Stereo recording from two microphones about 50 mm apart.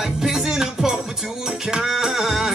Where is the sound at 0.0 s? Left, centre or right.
Centre.